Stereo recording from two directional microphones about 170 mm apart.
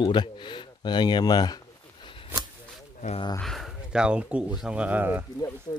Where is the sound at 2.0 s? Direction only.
30° left (ahead or behind).